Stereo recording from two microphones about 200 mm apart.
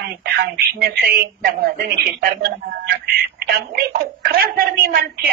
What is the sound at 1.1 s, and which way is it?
A woman's voice, 50° right (ahead or behind).